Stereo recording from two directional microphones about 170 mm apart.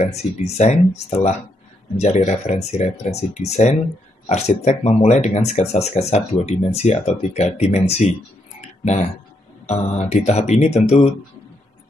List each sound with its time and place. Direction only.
0.0 s speech: 40° left (ahead or behind)
8.5 s a sound: 40° left (ahead or behind)
9.7 s speech: 40° left (ahead or behind)